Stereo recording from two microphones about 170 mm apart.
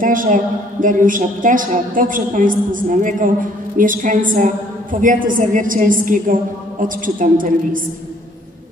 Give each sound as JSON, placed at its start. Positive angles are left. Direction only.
{"t": 0.0, "sound": "a woman's voice", "side_deg": -55}